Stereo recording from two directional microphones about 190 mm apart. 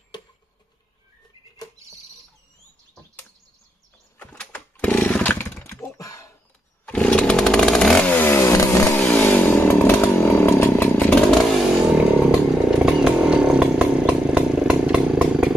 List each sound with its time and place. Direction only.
0.1 s tick-tock: 20° left (ahead or behind)
4.2 s chainsaw: 10° left (ahead or behind)
6.9 s chainsaw: 5° left (ahead or behind)
11.9 s chainsaw: 5° right (ahead or behind)